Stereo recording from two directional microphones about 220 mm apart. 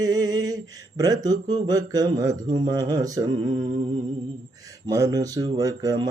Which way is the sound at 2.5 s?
20° right (ahead or behind).